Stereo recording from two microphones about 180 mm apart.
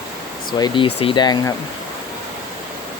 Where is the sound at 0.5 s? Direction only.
25° left (ahead or behind).